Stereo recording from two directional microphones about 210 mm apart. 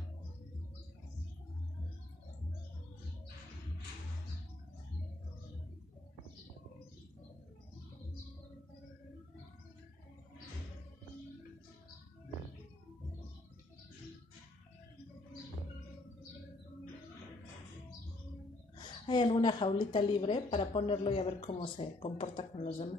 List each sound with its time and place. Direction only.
18.8 s a woman's voice: 20° left (ahead or behind)